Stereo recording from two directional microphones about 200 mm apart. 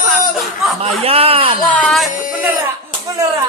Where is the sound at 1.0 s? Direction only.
30° right (ahead or behind).